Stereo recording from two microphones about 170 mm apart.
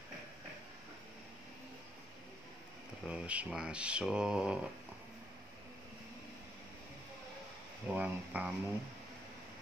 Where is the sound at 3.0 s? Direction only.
5° right (ahead or behind).